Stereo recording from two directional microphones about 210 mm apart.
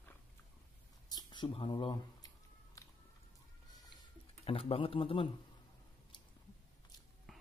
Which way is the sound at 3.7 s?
20° left (ahead or behind).